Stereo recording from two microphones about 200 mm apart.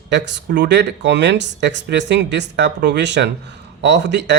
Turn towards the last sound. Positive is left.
turn(degrees=-60)  # may be behind; listen again after turning